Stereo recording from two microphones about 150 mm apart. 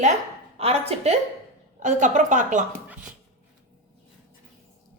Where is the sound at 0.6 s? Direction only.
40° right (ahead or behind).